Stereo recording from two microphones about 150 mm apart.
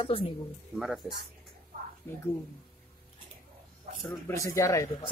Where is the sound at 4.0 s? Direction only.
15° left (ahead or behind).